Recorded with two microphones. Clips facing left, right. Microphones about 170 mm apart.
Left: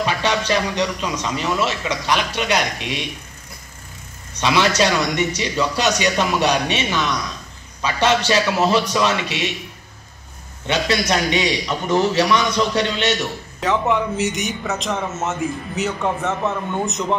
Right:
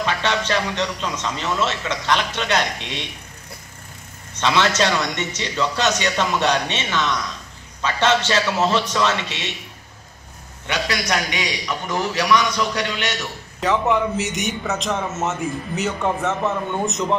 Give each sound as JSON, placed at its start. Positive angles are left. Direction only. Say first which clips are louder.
{"t": 0.0, "sound": "a man's voice", "louder": "left 2 dB", "side_deg": 15}
{"t": 4.4, "sound": "a man's voice", "louder": "left 2 dB", "side_deg": 15}
{"t": 10.7, "sound": "a man's voice", "louder": "left 4 dB", "side_deg": 25}
{"t": 13.6, "sound": "a man's voice", "louder": "even", "side_deg": 0}